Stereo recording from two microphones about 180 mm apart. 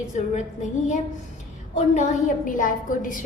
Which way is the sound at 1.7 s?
40° left (ahead or behind).